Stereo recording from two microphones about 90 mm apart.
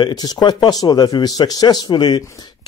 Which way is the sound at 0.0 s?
50° left (ahead or behind).